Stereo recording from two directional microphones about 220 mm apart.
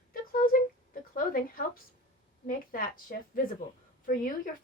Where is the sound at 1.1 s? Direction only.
40° left (ahead or behind).